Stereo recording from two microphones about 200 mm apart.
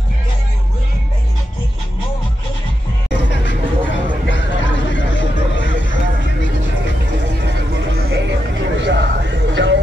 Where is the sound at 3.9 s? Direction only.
65° left (ahead or behind).